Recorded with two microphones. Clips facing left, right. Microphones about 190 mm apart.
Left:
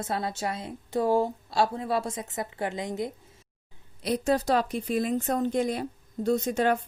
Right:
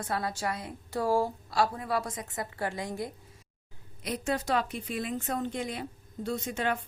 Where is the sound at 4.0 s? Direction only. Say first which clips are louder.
Left 6 dB; 35° left (ahead or behind).